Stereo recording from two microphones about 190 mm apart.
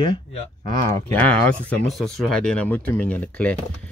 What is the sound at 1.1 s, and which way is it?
Speech, 5° left (ahead or behind).